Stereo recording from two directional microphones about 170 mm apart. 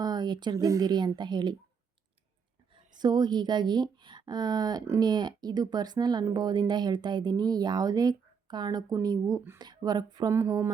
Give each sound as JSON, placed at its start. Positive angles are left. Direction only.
{"t": 0.0, "sound": "speech", "side_deg": -25}
{"t": 3.0, "sound": "speech", "side_deg": -25}